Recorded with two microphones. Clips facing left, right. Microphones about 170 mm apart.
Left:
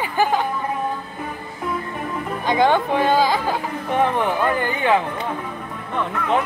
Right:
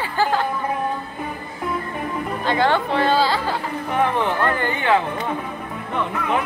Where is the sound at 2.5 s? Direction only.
15° left (ahead or behind).